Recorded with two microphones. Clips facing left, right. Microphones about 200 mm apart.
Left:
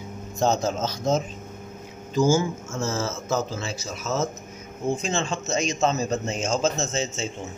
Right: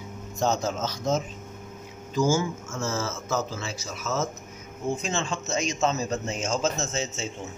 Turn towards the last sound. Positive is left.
turn(degrees=25)  # may be behind; listen again after turning